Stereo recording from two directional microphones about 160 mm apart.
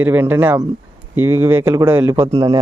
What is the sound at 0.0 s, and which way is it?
Speech, 10° right (ahead or behind).